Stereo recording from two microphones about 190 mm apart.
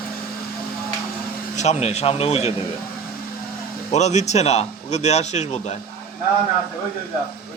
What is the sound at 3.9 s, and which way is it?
A man's voice, 35° left (ahead or behind).